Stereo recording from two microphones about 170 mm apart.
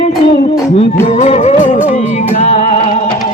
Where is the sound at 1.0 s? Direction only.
40° left (ahead or behind).